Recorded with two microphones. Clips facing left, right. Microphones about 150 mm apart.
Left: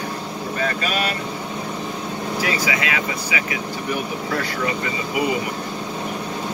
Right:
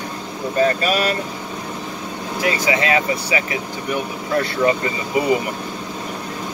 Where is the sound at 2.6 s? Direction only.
30° right (ahead or behind).